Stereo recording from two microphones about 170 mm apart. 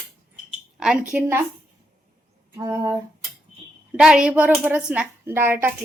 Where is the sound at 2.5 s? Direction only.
15° right (ahead or behind).